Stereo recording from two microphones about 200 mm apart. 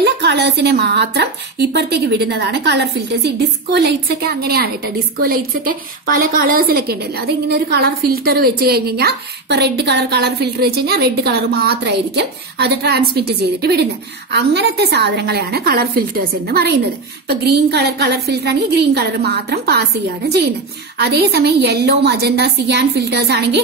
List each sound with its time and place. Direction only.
0.0 s a woman's voice: 55° right (ahead or behind)
21.0 s a woman's voice: 55° right (ahead or behind)